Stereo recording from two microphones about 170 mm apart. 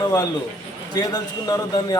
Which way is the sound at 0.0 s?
20° left (ahead or behind).